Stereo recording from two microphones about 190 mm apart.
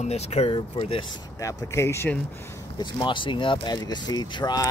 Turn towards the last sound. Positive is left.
turn(degrees=20)  # may be behind; listen again after turning